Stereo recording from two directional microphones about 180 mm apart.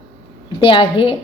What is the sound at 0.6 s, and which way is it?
Speech, 30° left (ahead or behind).